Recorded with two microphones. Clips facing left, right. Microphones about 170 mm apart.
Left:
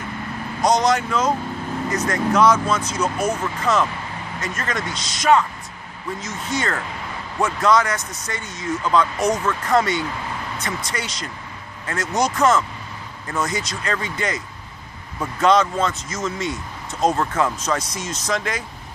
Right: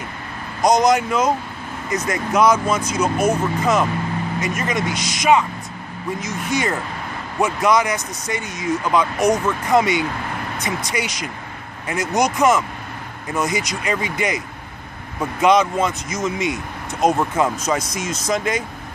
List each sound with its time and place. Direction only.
0.6 s speech: 10° right (ahead or behind)